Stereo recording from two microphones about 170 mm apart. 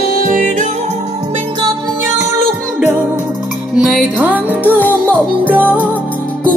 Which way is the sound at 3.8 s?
Centre (ahead or behind).